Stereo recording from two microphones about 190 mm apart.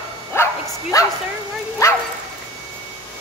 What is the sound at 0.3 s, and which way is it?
Bow-wow, 15° left (ahead or behind).